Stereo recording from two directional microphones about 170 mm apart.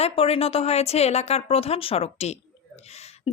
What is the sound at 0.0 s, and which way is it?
Speech, 35° left (ahead or behind).